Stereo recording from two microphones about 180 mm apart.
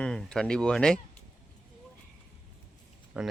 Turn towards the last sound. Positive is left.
turn(degrees=-5)  # may be behind; listen again after turning